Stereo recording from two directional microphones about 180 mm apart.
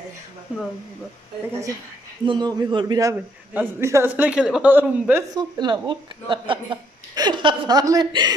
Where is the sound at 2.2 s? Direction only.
25° right (ahead or behind).